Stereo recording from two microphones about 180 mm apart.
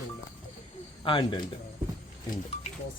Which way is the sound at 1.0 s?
25° left (ahead or behind).